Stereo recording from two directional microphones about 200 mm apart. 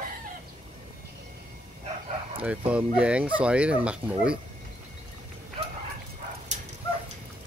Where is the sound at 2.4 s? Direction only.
5° right (ahead or behind).